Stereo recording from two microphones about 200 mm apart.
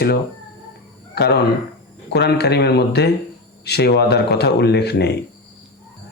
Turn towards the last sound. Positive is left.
turn(degrees=55)  # may be behind; listen again after turning